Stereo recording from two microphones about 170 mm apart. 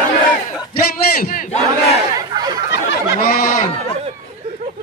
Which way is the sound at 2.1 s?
20° right (ahead or behind).